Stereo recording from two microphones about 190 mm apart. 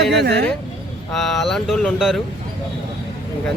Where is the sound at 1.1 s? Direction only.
Centre (ahead or behind).